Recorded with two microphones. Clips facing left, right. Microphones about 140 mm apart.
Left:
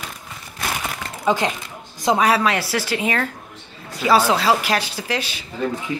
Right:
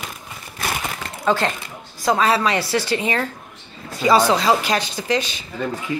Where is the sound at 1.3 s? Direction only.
15° left (ahead or behind).